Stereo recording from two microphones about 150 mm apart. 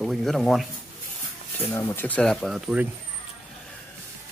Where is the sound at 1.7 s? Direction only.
20° left (ahead or behind); by 2.9 s 5° right (ahead or behind).